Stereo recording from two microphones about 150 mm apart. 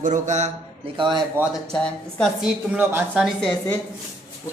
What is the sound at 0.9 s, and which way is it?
Speech, 35° right (ahead or behind).